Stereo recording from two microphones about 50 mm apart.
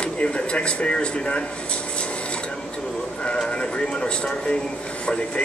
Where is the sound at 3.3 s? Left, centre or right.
Centre.